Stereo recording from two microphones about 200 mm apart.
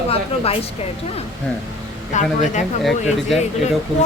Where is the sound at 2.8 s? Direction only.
Centre (ahead or behind).